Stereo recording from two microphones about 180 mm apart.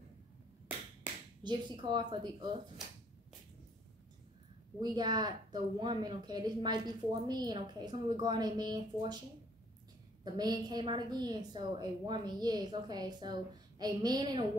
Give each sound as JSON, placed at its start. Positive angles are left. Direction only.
{"t": 1.4, "sound": "speech", "side_deg": -25}
{"t": 4.7, "sound": "speech", "side_deg": -20}
{"t": 10.2, "sound": "speech", "side_deg": -20}